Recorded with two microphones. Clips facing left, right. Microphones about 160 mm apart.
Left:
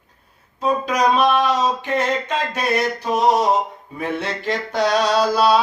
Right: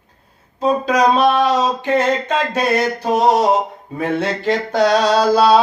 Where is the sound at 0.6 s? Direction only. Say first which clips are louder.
Right 4 dB; 30° right (ahead or behind).